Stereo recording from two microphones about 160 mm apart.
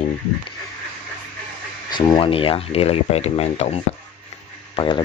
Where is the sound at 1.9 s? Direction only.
30° left (ahead or behind).